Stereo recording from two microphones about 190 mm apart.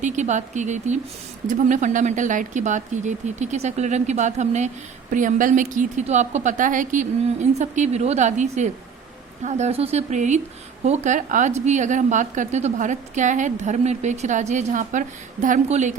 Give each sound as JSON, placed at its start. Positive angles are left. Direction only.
{"t": 0.0, "sound": "a woman's voice", "side_deg": -40}